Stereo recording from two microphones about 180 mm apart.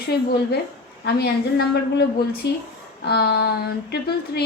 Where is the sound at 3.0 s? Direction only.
65° left (ahead or behind).